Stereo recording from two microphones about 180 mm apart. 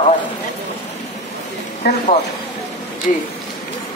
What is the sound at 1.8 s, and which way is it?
Speech, 65° left (ahead or behind).